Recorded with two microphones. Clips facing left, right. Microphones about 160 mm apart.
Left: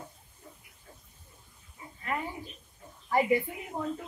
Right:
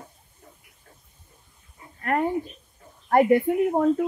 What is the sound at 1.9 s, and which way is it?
Speech, 60° right (ahead or behind).